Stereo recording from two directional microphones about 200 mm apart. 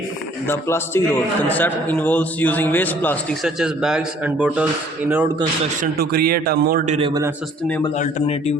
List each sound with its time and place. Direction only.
0.4 s a man's voice: 10° left (ahead or behind)
3.4 s a man's voice: 5° right (ahead or behind)
5.8 s a man's voice: 50° right (ahead or behind)
7.1 s speech: 15° right (ahead or behind)
7.9 s a man's voice: 35° left (ahead or behind)